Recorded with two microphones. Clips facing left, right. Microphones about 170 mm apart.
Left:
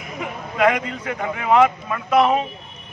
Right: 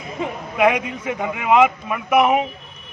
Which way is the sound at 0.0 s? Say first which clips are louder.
Right 3 dB; 20° right (ahead or behind).